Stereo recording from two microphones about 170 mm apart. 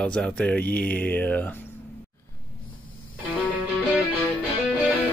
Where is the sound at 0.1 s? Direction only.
5° left (ahead or behind).